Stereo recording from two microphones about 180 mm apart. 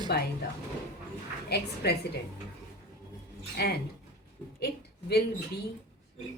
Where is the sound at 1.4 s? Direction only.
65° left (ahead or behind).